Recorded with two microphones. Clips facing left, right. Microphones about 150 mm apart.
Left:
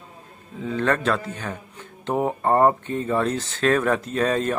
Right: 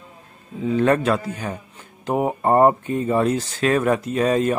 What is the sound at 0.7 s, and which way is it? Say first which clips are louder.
Speech: right 4 dB; 15° right (ahead or behind).